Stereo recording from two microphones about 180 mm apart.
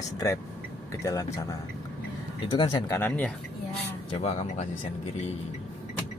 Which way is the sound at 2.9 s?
10° left (ahead or behind).